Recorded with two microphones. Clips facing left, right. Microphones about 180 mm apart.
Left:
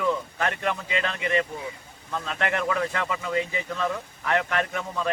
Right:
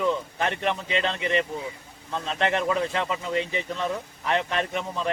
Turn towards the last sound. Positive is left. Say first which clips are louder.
# even
turn(degrees=-20)  # may be behind; listen again after turning